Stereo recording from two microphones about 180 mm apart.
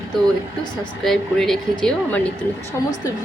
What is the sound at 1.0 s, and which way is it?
Speech, centre (ahead or behind).